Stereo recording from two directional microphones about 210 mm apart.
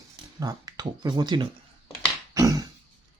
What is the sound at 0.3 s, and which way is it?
Speech, 20° right (ahead or behind).